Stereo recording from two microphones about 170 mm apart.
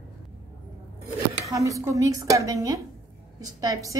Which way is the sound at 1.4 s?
20° right (ahead or behind).